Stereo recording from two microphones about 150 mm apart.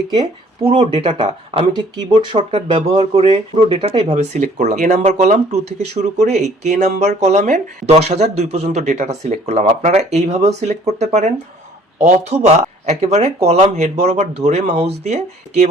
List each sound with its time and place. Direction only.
0.1 s speech: 30° right (ahead or behind); by 15.7 s 50° right (ahead or behind)